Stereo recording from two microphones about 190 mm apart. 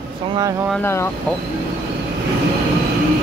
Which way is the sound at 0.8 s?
15° left (ahead or behind).